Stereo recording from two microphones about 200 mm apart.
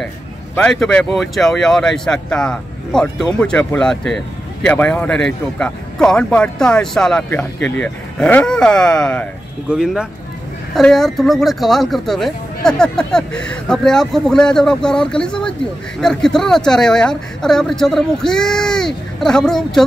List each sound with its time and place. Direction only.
0.6 s speech: 5° left (ahead or behind)